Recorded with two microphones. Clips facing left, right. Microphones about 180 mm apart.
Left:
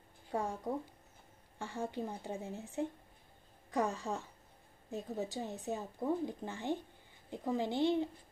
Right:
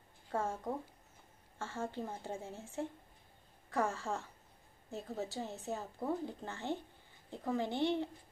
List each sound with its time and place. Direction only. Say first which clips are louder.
0.3 s a woman's voice: even; 15° left (ahead or behind)
1.6 s a woman's voice: left 1 dB; 15° left (ahead or behind)